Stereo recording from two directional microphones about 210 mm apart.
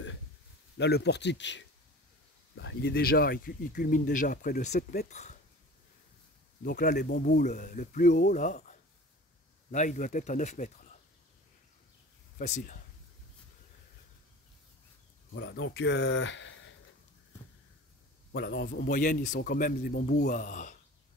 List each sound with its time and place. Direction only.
0.7 s a man's voice: 50° left (ahead or behind); by 5.4 s 35° left (ahead or behind)
6.6 s speech: 40° left (ahead or behind)
12.4 s speech: 40° left (ahead or behind)
15.3 s speech: 55° left (ahead or behind)
18.3 s a man's voice: 50° left (ahead or behind)